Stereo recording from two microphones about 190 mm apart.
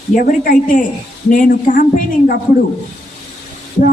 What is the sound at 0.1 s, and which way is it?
A woman's voice, 45° left (ahead or behind).